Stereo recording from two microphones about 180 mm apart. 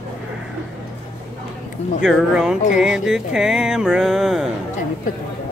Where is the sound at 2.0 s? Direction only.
5° right (ahead or behind).